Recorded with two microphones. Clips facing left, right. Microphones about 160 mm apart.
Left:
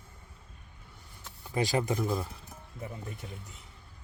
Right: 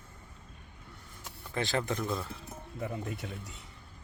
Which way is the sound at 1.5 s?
15° left (ahead or behind).